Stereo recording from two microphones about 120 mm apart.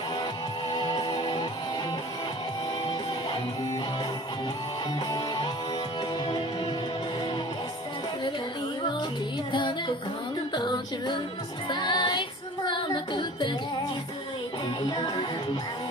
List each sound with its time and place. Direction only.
0.7 s music: 35° left (ahead or behind)
5.1 s music: 35° left (ahead or behind)
9.5 s music: 45° left (ahead or behind)
10.5 s female singing: 40° left (ahead or behind)
11.7 s music: 40° left (ahead or behind)
14.8 s music: 40° left (ahead or behind)